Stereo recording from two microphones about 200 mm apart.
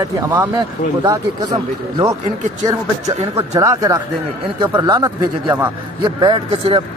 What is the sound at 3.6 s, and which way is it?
A man's voice, 15° right (ahead or behind).